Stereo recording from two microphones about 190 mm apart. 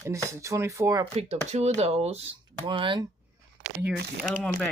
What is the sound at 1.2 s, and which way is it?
Speech, 35° right (ahead or behind).